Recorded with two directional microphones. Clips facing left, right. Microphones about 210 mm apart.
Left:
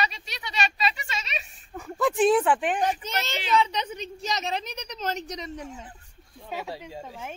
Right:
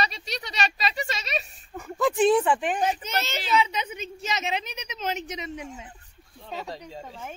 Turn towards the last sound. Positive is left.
turn(degrees=5)  # may be behind; listen again after turning